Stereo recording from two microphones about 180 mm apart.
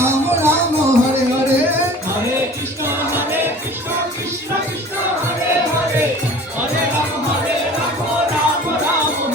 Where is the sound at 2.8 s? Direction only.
10° right (ahead or behind).